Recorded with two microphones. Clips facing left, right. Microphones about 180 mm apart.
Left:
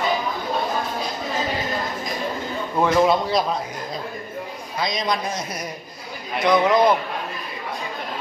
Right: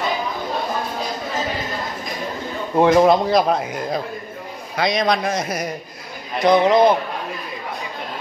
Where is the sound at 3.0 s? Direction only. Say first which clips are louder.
Right 4 dB; 55° right (ahead or behind).